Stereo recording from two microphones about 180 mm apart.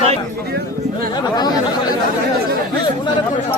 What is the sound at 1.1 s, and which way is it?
Speech, 20° left (ahead or behind).